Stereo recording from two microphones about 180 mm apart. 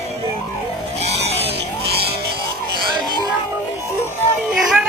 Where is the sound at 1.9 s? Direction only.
60° right (ahead or behind).